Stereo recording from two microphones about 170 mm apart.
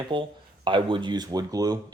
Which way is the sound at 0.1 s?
30° right (ahead or behind).